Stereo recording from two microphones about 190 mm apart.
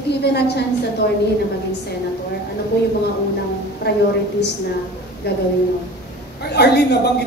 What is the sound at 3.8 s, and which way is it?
Speech, 60° left (ahead or behind).